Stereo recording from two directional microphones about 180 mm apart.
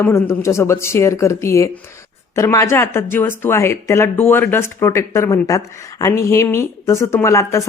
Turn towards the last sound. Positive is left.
turn(degrees=15)  # may be behind; listen again after turning